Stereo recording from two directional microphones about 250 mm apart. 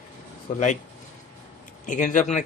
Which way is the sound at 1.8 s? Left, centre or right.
Left.